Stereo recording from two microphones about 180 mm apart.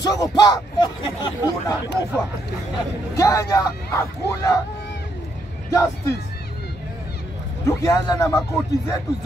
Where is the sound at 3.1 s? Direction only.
20° left (ahead or behind).